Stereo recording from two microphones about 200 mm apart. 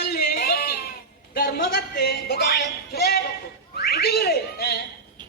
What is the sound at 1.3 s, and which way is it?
Music, 50° left (ahead or behind).